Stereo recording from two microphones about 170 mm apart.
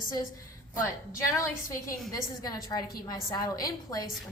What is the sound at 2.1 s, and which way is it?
A woman's voice, 20° left (ahead or behind).